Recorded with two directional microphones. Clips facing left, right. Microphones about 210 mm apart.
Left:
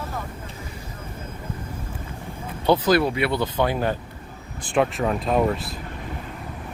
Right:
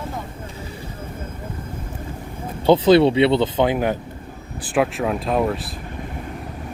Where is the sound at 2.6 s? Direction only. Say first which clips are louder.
Right 6 dB; 25° right (ahead or behind).